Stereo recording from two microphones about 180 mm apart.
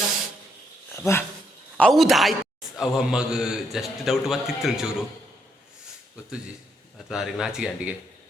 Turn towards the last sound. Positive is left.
turn(degrees=-5)  # may be behind; listen again after turning